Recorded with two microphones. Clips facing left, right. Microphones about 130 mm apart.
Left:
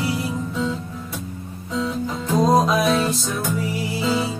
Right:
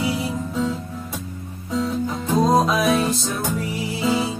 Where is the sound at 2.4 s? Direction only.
Centre (ahead or behind).